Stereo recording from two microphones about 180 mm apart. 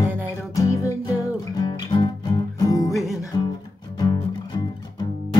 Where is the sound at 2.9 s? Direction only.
Centre (ahead or behind).